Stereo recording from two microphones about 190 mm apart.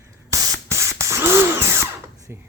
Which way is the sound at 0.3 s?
20° right (ahead or behind).